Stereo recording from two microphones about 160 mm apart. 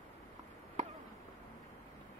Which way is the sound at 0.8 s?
45° right (ahead or behind).